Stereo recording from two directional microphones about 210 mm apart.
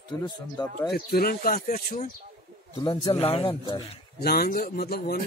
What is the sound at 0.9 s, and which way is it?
Speech, 45° left (ahead or behind).